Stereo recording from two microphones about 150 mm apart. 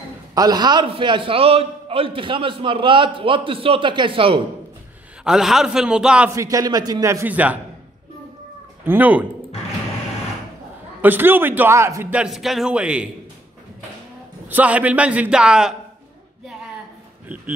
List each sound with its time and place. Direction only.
0.3 s a man's voice: 25° right (ahead or behind)
5.2 s a man's voice: 5° right (ahead or behind)
6.3 s speech: 25° right (ahead or behind)
8.8 s a man's voice: 10° right (ahead or behind)
11.0 s a man's voice: 15° right (ahead or behind)
14.5 s a man's voice: 10° right (ahead or behind)